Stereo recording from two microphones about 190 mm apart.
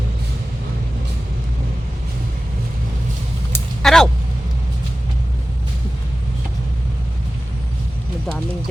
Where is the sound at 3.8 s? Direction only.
Centre (ahead or behind).